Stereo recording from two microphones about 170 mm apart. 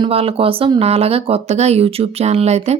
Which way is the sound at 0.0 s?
35° right (ahead or behind).